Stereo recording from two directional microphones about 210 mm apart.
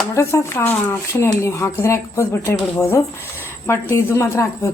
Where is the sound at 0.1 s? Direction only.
15° left (ahead or behind).